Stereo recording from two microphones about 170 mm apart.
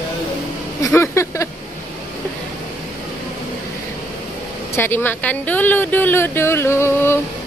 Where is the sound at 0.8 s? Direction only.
15° left (ahead or behind).